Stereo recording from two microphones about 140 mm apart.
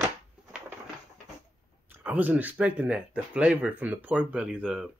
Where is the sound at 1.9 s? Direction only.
10° right (ahead or behind).